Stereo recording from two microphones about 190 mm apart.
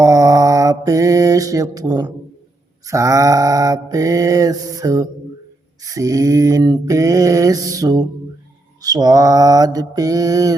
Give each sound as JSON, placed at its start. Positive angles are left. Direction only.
{"t": 0.0, "sound": "mantra", "side_deg": -20}